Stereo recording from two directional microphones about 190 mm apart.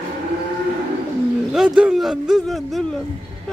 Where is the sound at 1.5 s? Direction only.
5° right (ahead or behind).